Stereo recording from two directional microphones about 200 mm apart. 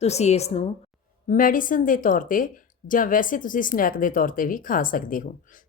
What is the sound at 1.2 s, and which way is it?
Speech, 45° left (ahead or behind).